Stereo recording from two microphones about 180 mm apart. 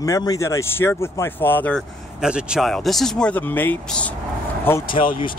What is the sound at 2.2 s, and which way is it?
Speech, 5° right (ahead or behind).